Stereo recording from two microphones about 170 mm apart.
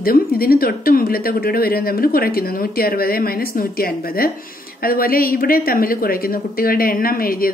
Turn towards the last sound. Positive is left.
turn(degrees=60)  # may be behind; listen again after turning